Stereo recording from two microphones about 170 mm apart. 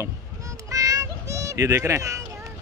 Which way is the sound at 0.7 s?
20° right (ahead or behind).